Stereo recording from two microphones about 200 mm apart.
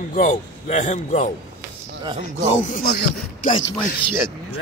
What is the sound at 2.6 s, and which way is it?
Speech, 45° left (ahead or behind).